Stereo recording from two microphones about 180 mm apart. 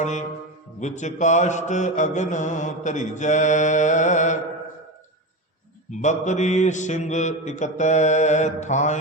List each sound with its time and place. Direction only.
0.0 s mantra: 40° left (ahead or behind)
5.9 s mantra: 40° left (ahead or behind)